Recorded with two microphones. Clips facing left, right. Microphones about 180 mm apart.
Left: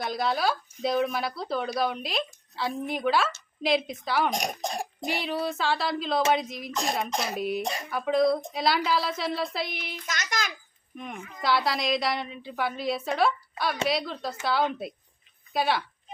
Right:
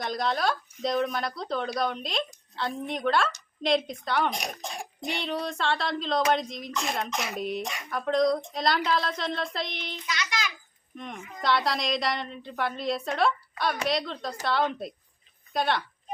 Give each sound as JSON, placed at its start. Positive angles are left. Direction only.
{"t": 0.0, "sound": "speech", "side_deg": 5}
{"t": 4.3, "sound": "a child's voice", "side_deg": 45}
{"t": 5.0, "sound": "speech", "side_deg": 5}
{"t": 7.1, "sound": "speech", "side_deg": 35}
{"t": 7.3, "sound": "speech", "side_deg": 5}
{"t": 7.6, "sound": "speech", "side_deg": 35}
{"t": 7.9, "sound": "speech", "side_deg": 5}
{"t": 10.1, "sound": "a sound", "side_deg": 45}
{"t": 10.9, "sound": "speech", "side_deg": 5}